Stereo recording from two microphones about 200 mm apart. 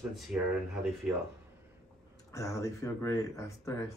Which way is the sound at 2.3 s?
15° left (ahead or behind).